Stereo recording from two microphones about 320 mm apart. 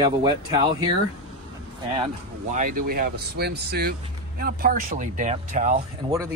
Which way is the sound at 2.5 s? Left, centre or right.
Right.